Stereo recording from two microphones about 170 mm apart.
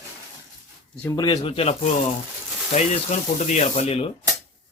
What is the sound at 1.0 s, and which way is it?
Speech, 20° left (ahead or behind).